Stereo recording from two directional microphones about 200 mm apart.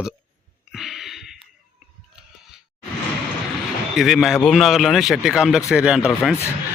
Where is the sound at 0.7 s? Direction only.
Centre (ahead or behind).